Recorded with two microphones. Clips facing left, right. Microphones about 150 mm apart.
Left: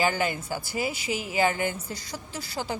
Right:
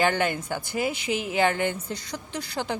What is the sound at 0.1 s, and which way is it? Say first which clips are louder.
Speech: right 2 dB; 55° right (ahead or behind).